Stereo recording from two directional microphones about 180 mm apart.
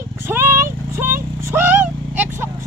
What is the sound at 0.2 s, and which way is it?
Vehicle, 15° right (ahead or behind).